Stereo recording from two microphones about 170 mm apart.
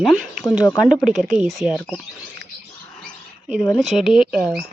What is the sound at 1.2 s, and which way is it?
Speech, centre (ahead or behind).